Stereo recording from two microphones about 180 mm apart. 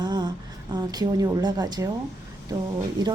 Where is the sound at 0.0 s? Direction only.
25° right (ahead or behind).